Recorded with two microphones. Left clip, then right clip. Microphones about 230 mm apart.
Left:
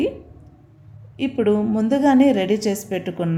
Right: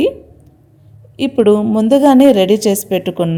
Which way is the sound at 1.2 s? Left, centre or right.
Right.